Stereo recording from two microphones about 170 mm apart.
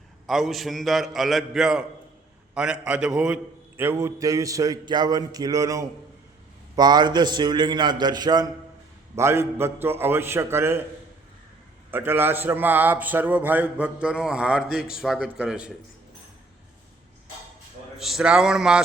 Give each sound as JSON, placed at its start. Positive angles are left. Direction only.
{"t": 0.3, "sound": "a man's voice", "side_deg": 0}
{"t": 11.9, "sound": "a man's voice", "side_deg": -10}
{"t": 17.9, "sound": "a man's voice", "side_deg": 0}